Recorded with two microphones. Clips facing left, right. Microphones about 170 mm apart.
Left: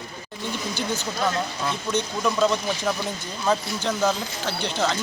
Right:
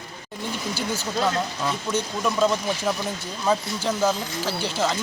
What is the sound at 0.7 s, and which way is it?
Speech, 5° right (ahead or behind).